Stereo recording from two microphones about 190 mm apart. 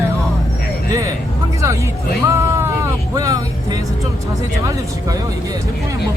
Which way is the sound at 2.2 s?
15° right (ahead or behind).